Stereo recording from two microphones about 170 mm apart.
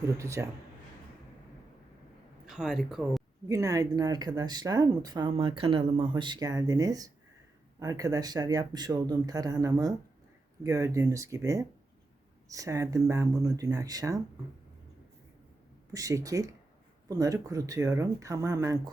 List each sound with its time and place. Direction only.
0.2 s a man's voice: 15° right (ahead or behind)
2.5 s speech: 5° right (ahead or behind)
3.5 s speech: 20° right (ahead or behind)
15.9 s speech: 20° right (ahead or behind)